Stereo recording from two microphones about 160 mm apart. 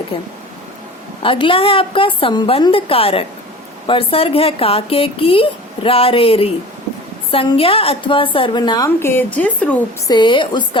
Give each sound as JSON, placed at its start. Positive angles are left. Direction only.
{"t": 0.1, "sound": "speech", "side_deg": 35}
{"t": 9.0, "sound": "speech", "side_deg": 15}
{"t": 10.1, "sound": "a woman's voice", "side_deg": 30}